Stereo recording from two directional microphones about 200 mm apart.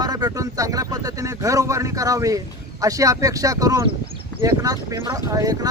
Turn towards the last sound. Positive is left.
turn(degrees=-15)  # may be behind; listen again after turning